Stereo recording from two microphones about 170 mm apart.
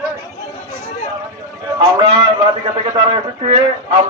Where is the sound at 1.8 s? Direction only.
30° right (ahead or behind).